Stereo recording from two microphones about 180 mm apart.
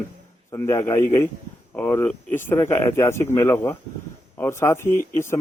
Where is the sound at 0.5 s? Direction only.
15° left (ahead or behind).